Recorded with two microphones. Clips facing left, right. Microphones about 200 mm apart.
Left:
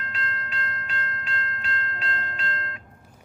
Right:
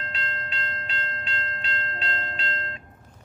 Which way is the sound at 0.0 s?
25° right (ahead or behind).